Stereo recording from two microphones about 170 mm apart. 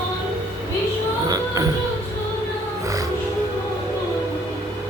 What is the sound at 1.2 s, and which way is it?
Music, 20° right (ahead or behind).